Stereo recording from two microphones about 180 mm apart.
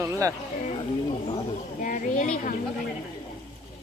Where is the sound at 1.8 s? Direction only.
45° left (ahead or behind).